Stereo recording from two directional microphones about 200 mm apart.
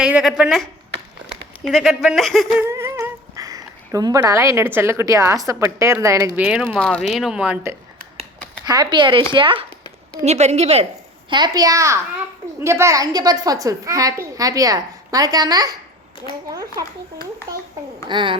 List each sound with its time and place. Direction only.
0.0 s speech: 5° right (ahead or behind)
2.6 s speech: 15° right (ahead or behind)
6.7 s speech: 5° left (ahead or behind)
8.6 s a child's voice: 20° right (ahead or behind)
11.3 s a child's voice: 20° right (ahead or behind)
18.1 s a child's voice: 25° right (ahead or behind)